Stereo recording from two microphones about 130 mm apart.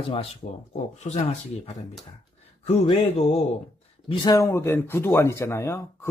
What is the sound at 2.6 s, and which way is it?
Speech, 50° left (ahead or behind).